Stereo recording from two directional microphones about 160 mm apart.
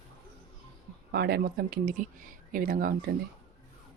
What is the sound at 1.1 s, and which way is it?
Speech, 85° right.